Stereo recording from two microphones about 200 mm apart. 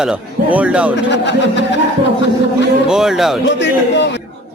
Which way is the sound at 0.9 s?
60° left (ahead or behind).